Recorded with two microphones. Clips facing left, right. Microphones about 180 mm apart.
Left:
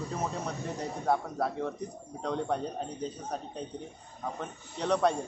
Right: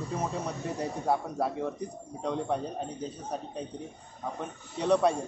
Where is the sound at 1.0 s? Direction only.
5° right (ahead or behind).